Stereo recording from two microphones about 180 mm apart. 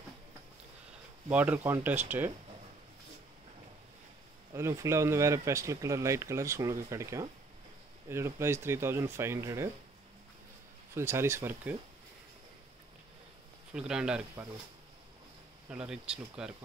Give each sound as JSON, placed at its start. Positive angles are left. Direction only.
{"t": 1.3, "sound": "speech", "side_deg": -10}
{"t": 4.6, "sound": "speech", "side_deg": -15}
{"t": 11.0, "sound": "speech", "side_deg": -15}
{"t": 13.7, "sound": "speech", "side_deg": -5}
{"t": 15.7, "sound": "speech", "side_deg": -5}